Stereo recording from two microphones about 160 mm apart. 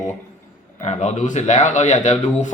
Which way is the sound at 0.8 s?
50° left (ahead or behind).